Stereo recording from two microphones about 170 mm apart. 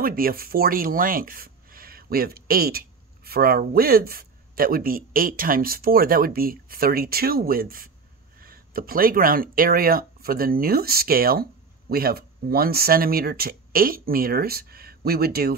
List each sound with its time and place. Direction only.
0.0 s speech: 60° right (ahead or behind)